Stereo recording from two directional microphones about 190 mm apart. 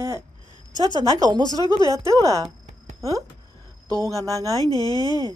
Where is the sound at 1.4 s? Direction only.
20° left (ahead or behind).